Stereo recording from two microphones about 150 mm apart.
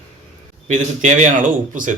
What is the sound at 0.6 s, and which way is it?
Speech, 55° right (ahead or behind).